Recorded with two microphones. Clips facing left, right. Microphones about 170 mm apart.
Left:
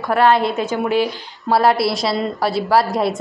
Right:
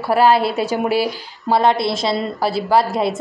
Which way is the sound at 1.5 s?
5° left (ahead or behind).